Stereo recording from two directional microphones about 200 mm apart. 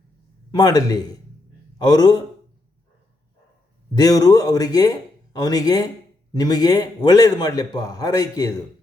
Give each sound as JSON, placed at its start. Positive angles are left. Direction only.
{"t": 0.5, "sound": "a man's voice", "side_deg": 20}
{"t": 3.9, "sound": "a man's voice", "side_deg": 20}